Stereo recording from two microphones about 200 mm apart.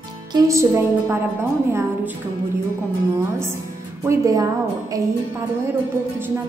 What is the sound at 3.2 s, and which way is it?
A woman's voice, 15° right (ahead or behind).